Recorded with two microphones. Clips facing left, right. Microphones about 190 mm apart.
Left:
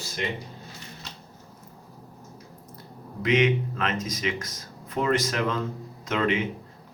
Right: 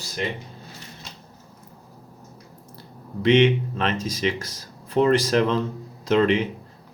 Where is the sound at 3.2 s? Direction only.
30° right (ahead or behind).